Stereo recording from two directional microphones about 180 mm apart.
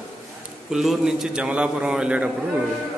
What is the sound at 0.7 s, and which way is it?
A man's voice, centre (ahead or behind).